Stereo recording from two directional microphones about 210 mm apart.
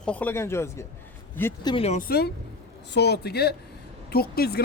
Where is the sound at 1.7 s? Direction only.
30° left (ahead or behind).